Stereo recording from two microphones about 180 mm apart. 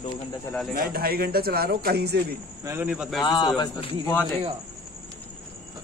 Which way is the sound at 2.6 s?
10° right (ahead or behind).